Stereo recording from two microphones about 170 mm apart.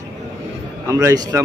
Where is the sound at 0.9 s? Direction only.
20° right (ahead or behind).